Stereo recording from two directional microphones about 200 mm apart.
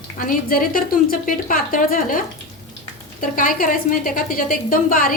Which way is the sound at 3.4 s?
45° left (ahead or behind).